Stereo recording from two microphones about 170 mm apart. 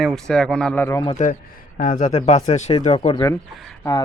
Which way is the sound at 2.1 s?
40° left (ahead or behind).